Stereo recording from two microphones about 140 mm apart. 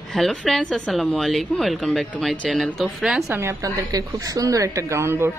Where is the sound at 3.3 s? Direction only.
20° right (ahead or behind).